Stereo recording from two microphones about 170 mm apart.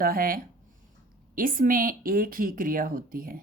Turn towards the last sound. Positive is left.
turn(degrees=-55)  # may be behind; listen again after turning